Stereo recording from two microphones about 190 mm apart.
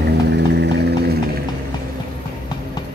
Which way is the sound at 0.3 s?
60° right (ahead or behind).